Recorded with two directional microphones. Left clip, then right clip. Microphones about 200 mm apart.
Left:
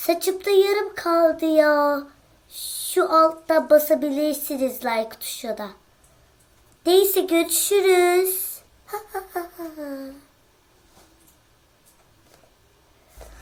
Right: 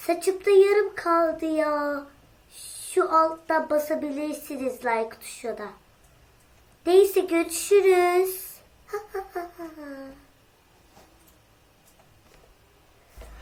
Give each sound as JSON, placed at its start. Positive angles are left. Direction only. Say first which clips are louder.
{"t": 0.0, "sound": "speech", "louder": "left 2 dB", "side_deg": 50}
{"t": 6.8, "sound": "speech", "louder": "left 1 dB", "side_deg": 50}
{"t": 8.9, "sound": "a sound", "louder": "left 2 dB", "side_deg": 50}